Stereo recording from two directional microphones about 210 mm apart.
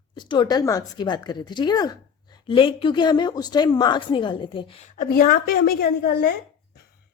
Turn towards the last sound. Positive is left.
turn(degrees=50)  # may be behind; listen again after turning